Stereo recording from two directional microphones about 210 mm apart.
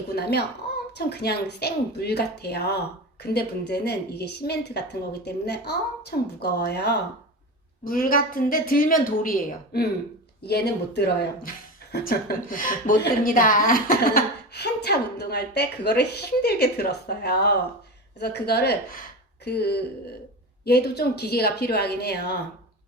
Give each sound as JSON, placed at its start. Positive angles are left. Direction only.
{"t": 0.2, "sound": "a woman's voice", "side_deg": 50}